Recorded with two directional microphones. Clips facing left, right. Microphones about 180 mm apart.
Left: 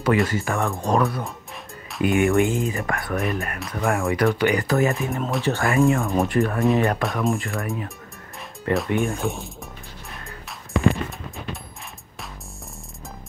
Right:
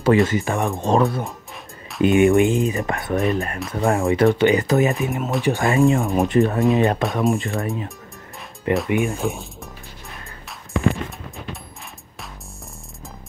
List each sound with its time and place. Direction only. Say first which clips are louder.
0.0 s speech: right 4 dB; 25° right (ahead or behind)
9.0 s speech: right 1 dB; centre (ahead or behind)